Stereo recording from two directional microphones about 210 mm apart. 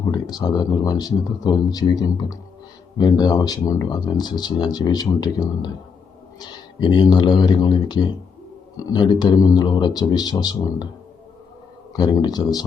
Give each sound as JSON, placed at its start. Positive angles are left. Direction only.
{"t": 0.1, "sound": "speech", "side_deg": 20}
{"t": 11.9, "sound": "speech", "side_deg": 20}